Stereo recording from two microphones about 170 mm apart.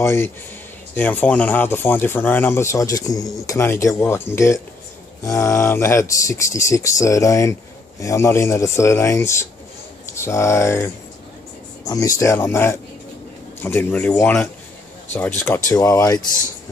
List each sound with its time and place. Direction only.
0.0 s speech: 15° left (ahead or behind)